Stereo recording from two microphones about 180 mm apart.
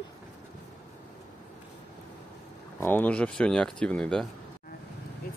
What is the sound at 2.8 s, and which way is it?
Speech, 10° left (ahead or behind).